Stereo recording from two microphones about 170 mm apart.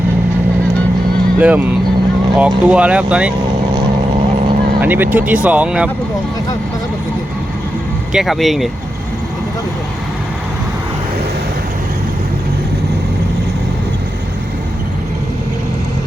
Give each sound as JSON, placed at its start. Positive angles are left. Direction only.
{"t": 1.4, "sound": "speech", "side_deg": -10}
{"t": 4.8, "sound": "speech", "side_deg": -10}
{"t": 8.1, "sound": "speech", "side_deg": 0}